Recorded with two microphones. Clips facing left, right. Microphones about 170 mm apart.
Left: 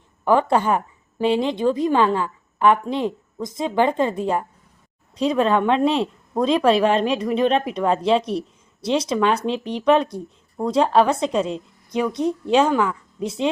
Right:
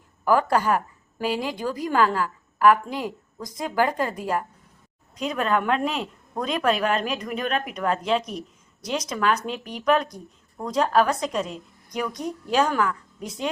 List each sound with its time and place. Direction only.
0.3 s speech: 25° left (ahead or behind)